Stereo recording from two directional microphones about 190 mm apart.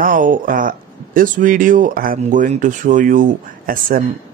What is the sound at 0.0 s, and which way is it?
Speech, 45° right (ahead or behind).